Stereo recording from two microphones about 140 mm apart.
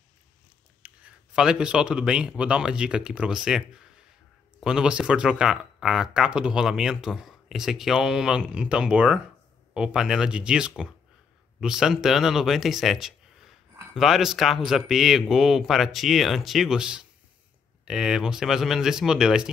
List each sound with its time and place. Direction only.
0.8 s speech: 10° right (ahead or behind)